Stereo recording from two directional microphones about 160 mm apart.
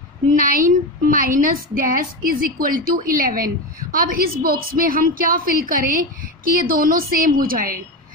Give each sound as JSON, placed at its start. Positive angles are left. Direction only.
{"t": 0.4, "sound": "a woman's voice", "side_deg": -60}